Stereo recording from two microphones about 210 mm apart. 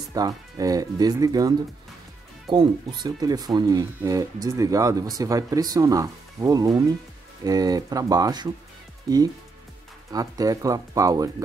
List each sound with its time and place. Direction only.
0.1 s speech: 15° right (ahead or behind)
2.5 s speech: 20° right (ahead or behind)